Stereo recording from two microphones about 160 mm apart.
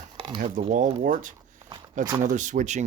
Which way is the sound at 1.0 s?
55° right (ahead or behind).